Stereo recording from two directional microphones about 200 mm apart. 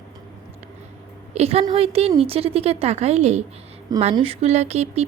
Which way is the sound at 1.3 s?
30° right (ahead or behind).